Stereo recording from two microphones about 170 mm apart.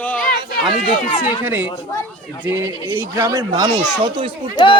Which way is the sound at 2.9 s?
15° right (ahead or behind).